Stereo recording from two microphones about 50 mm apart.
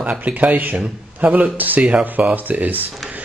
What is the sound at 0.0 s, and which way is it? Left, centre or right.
Speech, right.